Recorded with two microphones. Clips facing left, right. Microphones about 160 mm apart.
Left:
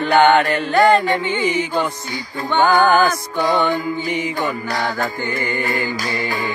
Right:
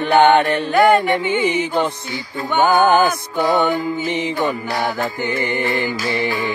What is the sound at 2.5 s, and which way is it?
Music, 15° right (ahead or behind).